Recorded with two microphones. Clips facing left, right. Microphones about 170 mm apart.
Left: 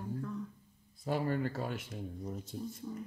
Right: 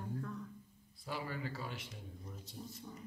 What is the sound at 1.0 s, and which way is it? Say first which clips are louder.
Speech: left 9 dB; 50° left (ahead or behind).